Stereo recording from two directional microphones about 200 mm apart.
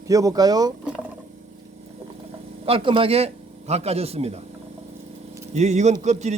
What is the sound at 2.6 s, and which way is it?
A man's voice, 25° right (ahead or behind).